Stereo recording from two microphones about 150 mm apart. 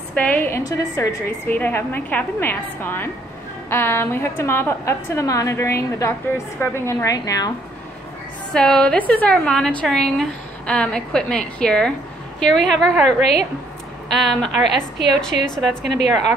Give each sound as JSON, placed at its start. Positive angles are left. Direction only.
{"t": 0.1, "sound": "a woman's voice", "side_deg": 10}
{"t": 8.5, "sound": "a woman's voice", "side_deg": 5}
{"t": 14.1, "sound": "a woman's voice", "side_deg": 0}